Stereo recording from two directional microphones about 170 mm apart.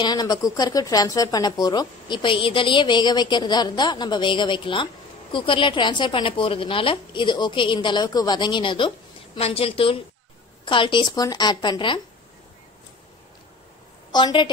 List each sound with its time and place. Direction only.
0.0 s speech: 25° left (ahead or behind)
14.1 s speech: 25° left (ahead or behind)